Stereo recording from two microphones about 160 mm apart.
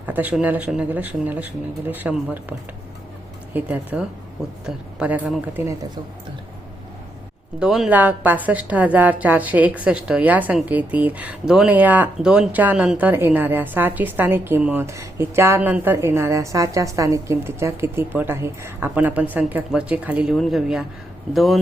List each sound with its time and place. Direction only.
0.0 s a woman's voice: 10° right (ahead or behind)
7.6 s a woman's voice: 5° right (ahead or behind)